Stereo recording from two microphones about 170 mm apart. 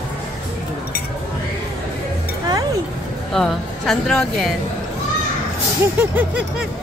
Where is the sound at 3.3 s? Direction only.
Centre (ahead or behind).